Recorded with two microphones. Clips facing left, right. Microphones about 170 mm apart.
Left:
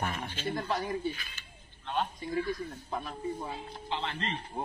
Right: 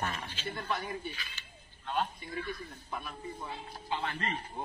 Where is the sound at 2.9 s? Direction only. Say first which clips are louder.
Left 5 dB; 35° left (ahead or behind).